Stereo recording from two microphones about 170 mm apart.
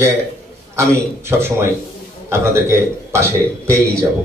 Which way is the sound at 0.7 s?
15° right (ahead or behind).